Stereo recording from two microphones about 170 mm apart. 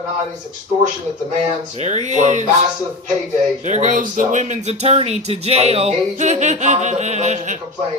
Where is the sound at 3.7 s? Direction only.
45° right (ahead or behind).